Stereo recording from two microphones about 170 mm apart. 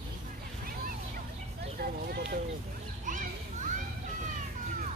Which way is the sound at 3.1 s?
50° right (ahead or behind).